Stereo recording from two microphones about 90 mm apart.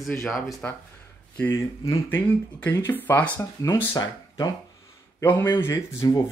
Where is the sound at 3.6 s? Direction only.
40° left (ahead or behind).